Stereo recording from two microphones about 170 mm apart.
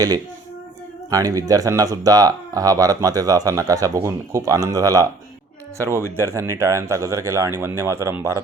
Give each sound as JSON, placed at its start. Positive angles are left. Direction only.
{"t": 1.1, "sound": "speech", "side_deg": -20}